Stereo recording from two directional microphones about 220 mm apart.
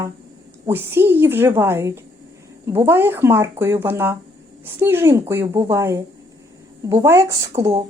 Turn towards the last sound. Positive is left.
turn(degrees=-25)  # may be behind; listen again after turning